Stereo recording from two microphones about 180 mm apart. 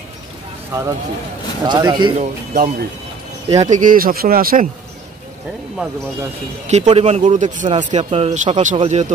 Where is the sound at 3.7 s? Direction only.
50° right (ahead or behind).